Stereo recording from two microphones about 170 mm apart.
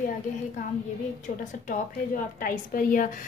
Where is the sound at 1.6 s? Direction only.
55° left (ahead or behind).